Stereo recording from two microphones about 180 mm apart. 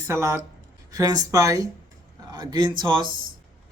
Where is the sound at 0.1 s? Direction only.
15° right (ahead or behind).